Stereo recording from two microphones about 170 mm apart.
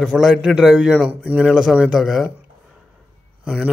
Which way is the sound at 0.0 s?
5° right (ahead or behind).